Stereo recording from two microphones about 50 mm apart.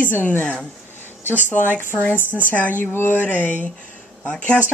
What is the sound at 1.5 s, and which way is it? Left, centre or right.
Speech, left.